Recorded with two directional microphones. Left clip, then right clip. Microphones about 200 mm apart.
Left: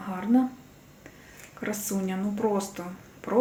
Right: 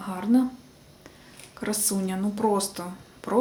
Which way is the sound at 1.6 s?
5° right (ahead or behind).